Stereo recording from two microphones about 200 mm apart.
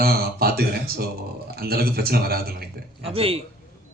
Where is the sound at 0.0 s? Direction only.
50° right (ahead or behind).